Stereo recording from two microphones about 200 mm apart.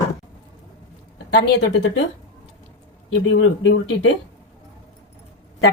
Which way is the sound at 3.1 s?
75° left (ahead or behind).